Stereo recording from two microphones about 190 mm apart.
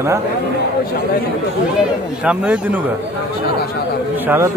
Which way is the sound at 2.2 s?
5° right (ahead or behind).